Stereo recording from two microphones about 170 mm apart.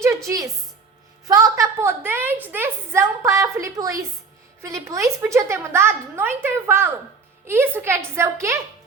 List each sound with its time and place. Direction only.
0.3 s a woman's voice: 20° right (ahead or behind)